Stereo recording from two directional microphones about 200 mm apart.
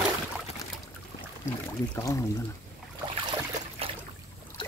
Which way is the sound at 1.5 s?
15° left (ahead or behind).